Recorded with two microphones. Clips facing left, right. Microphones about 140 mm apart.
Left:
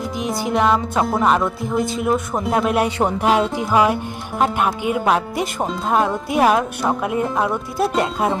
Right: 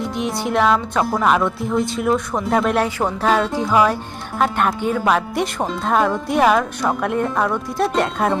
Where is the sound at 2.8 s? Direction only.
20° left (ahead or behind).